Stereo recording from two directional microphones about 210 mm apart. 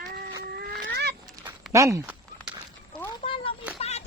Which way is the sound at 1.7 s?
15° right (ahead or behind).